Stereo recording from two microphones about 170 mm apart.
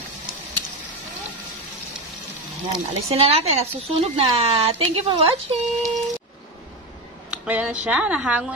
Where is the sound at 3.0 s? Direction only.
35° right (ahead or behind).